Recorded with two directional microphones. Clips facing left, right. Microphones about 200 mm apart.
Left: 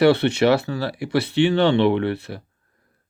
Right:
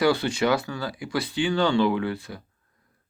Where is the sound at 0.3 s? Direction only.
65° left (ahead or behind).